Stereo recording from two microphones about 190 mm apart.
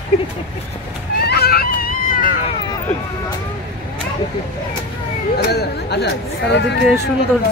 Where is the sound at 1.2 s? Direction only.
55° left (ahead or behind).